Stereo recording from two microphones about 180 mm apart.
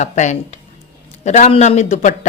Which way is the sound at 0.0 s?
40° left (ahead or behind).